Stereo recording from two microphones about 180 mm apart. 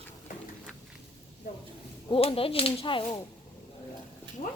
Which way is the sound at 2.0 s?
30° left (ahead or behind).